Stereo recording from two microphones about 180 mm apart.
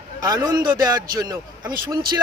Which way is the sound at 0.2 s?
20° right (ahead or behind).